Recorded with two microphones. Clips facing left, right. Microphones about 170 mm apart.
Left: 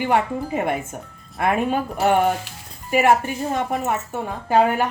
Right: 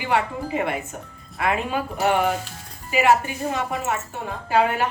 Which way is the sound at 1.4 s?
50° left (ahead or behind).